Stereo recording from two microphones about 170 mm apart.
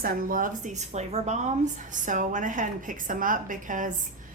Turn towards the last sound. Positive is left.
turn(degrees=-50)  # may be behind; listen again after turning